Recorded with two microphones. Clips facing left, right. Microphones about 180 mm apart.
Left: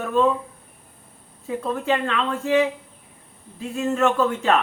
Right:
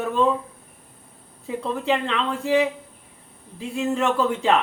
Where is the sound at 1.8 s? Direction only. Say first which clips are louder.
Even; 15° right (ahead or behind).